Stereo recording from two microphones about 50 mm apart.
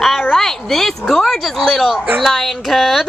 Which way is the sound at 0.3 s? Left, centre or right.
Centre.